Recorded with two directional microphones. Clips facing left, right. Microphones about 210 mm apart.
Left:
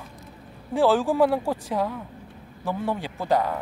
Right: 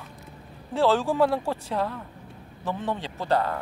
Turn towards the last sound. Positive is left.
turn(degrees=10)  # may be behind; listen again after turning